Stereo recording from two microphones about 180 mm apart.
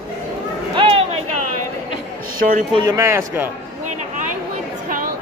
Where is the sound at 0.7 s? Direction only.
30° right (ahead or behind).